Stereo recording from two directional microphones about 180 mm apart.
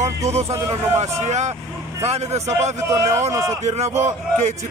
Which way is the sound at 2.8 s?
15° right (ahead or behind).